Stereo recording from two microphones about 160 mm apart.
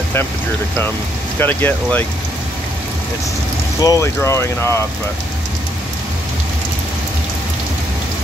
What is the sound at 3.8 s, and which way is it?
Speech, 20° left (ahead or behind).